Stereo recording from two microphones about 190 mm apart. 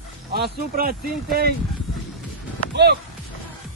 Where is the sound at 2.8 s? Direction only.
60° right (ahead or behind).